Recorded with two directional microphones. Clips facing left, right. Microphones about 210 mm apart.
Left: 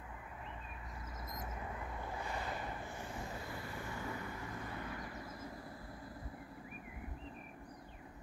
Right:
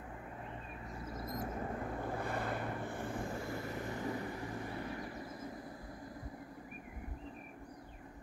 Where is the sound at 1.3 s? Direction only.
50° right (ahead or behind); by 5.0 s 25° right (ahead or behind).